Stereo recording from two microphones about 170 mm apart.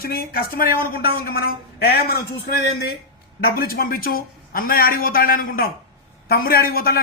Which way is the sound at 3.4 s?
60° left (ahead or behind).